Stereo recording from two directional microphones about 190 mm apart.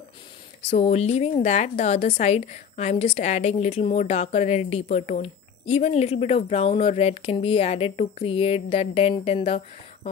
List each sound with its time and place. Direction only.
0.6 s a woman's voice: 35° left (ahead or behind)